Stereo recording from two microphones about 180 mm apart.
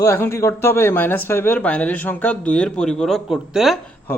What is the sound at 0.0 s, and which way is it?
A man's voice, 15° left (ahead or behind).